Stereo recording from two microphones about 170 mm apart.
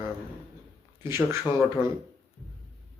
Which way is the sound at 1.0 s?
15° right (ahead or behind).